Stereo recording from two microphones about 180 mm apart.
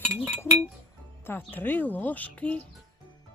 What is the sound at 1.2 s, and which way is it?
Speech, 10° left (ahead or behind).